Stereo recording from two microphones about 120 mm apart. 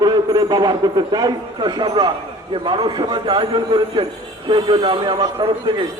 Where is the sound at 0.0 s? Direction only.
35° right (ahead or behind).